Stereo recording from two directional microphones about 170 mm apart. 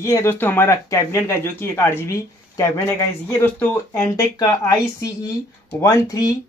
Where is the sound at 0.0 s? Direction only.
15° left (ahead or behind).